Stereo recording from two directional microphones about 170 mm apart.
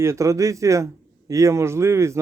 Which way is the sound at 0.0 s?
15° right (ahead or behind).